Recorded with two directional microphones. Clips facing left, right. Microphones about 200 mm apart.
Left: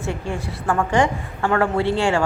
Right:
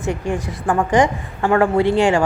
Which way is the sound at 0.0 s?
15° right (ahead or behind).